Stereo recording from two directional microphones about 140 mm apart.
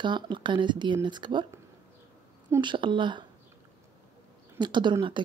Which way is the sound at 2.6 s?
35° right (ahead or behind).